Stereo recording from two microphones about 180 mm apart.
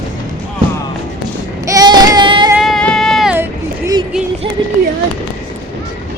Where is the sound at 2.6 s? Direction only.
Centre (ahead or behind).